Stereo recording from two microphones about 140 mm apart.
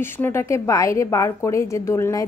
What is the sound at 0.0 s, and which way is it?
Speech, 15° left (ahead or behind).